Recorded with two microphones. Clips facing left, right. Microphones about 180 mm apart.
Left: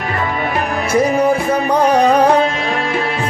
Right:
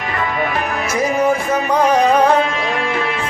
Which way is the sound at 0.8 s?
35° left (ahead or behind).